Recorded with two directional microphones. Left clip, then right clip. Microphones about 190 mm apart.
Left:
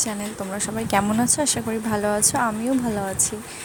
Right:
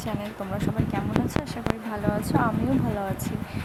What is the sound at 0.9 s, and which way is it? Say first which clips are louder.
A woman's voice: left 10 dB; 30° left (ahead or behind).